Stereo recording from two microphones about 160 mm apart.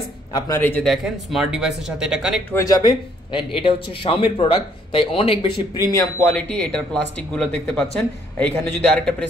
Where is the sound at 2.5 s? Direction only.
20° left (ahead or behind).